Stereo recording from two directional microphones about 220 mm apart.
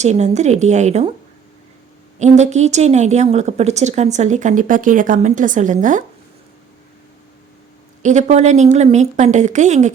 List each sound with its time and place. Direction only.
0.0 s a woman's voice: 30° right (ahead or behind)
2.1 s a woman's voice: 30° right (ahead or behind)
8.0 s a woman's voice: 30° right (ahead or behind)